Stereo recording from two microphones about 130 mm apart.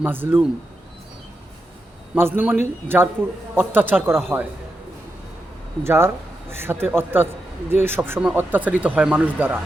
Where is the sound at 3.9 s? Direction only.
20° right (ahead or behind).